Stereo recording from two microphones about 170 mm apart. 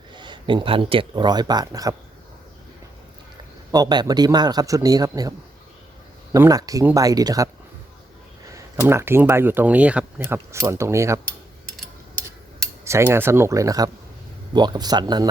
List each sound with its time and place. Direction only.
0.1 s speech: 30° right (ahead or behind)
3.7 s a man's voice: 25° right (ahead or behind)
6.3 s a man's voice: 20° right (ahead or behind)
8.9 s speech: 15° right (ahead or behind)
12.8 s a man's voice: 15° right (ahead or behind)